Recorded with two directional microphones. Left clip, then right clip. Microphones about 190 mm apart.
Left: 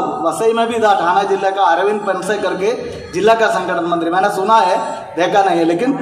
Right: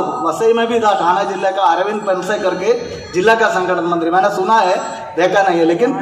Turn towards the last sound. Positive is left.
turn(degrees=40)  # may be behind; listen again after turning